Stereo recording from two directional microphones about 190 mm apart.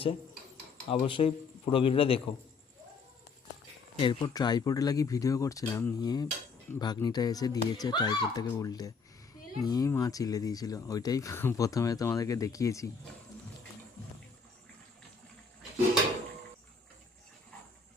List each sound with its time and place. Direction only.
0.9 s speech: 30° left (ahead or behind)
3.9 s speech: 25° left (ahead or behind)